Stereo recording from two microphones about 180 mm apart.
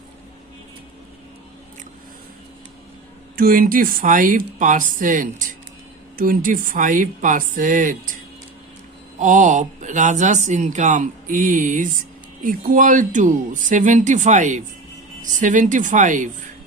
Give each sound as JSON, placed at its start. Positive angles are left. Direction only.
{"t": 3.3, "sound": "speech", "side_deg": -50}
{"t": 9.1, "sound": "speech", "side_deg": -45}